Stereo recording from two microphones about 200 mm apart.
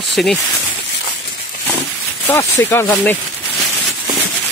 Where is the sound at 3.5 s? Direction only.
Centre (ahead or behind).